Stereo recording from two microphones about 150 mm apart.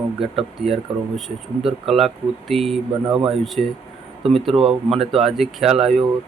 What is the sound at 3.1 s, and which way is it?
Speech, 30° right (ahead or behind).